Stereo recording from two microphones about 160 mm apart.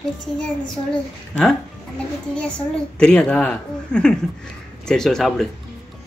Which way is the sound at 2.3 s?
5° left (ahead or behind).